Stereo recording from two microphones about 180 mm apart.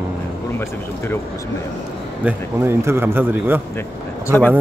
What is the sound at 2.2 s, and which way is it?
A man's voice, 15° right (ahead or behind).